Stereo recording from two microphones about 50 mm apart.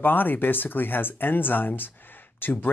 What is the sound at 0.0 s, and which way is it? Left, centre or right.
Speech, left.